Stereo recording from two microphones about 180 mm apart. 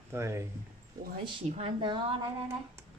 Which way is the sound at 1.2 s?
30° right (ahead or behind).